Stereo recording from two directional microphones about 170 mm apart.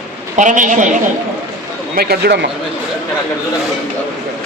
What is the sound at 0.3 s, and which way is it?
Speech, 50° right (ahead or behind).